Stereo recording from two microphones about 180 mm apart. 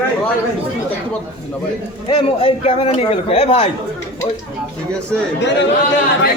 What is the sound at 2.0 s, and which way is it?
Speech, 30° left (ahead or behind).